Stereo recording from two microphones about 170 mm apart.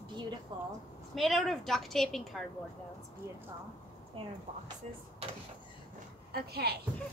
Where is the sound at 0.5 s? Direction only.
25° right (ahead or behind).